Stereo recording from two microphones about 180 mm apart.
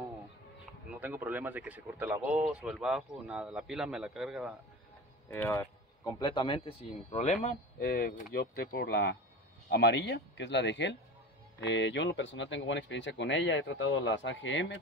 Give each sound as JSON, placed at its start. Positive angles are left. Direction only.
{"t": 0.9, "sound": "a man's voice", "side_deg": -10}
{"t": 5.3, "sound": "speech", "side_deg": 15}
{"t": 7.8, "sound": "speech", "side_deg": 55}